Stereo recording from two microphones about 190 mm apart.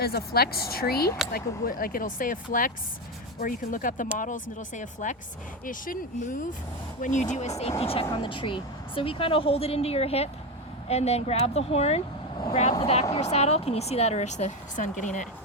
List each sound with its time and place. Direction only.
0.0 s speech: 55° left (ahead or behind)